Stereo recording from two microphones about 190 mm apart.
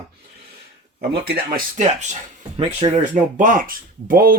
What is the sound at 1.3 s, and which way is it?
Speech, 35° right (ahead or behind).